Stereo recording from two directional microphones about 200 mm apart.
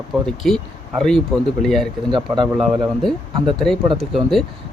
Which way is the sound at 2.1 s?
25° right (ahead or behind).